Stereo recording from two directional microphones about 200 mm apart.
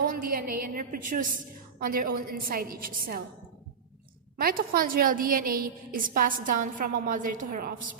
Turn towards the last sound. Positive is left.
turn(degrees=-45)  # may be behind; listen again after turning